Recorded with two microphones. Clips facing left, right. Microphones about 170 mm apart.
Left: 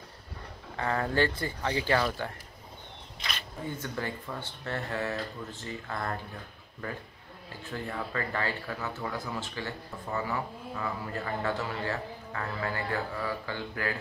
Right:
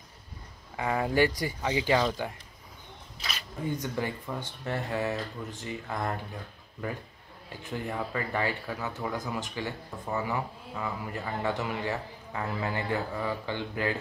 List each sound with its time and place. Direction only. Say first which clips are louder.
0.7 s speech: right 2 dB; 10° right (ahead or behind)
3.2 s a sound: even; 5° right (ahead or behind)
3.7 s speech: right 3 dB; 15° right (ahead or behind)
7.7 s speech: right 2 dB; 15° right (ahead or behind)